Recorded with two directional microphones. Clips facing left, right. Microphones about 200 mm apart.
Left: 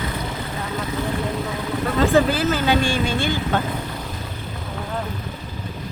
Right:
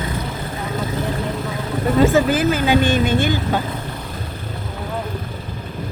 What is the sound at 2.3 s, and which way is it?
Speech, 15° right (ahead or behind).